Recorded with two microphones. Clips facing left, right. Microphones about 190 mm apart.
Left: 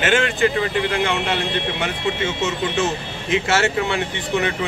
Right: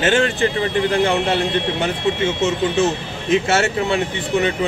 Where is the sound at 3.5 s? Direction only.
25° right (ahead or behind).